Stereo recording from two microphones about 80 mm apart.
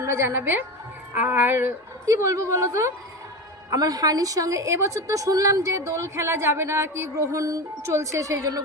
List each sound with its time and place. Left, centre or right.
0.0 s a woman's voice: right
1.1 s music: right
2.0 s a woman's voice: right
3.7 s a woman's voice: right